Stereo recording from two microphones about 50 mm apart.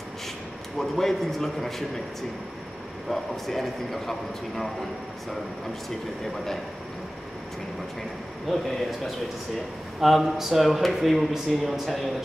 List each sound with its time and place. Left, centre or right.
0.7 s speech: centre
3.1 s speech: centre
8.5 s speech: centre